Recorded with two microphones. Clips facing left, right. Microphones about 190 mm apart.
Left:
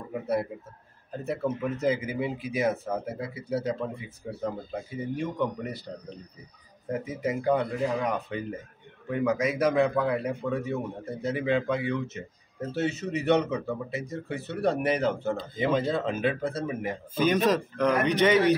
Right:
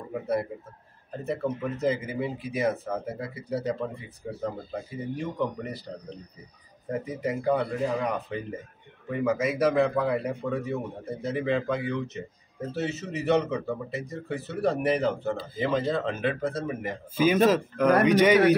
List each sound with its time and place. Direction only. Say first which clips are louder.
1.2 s speech: even; centre (ahead or behind)
6.9 s speech: even; centre (ahead or behind)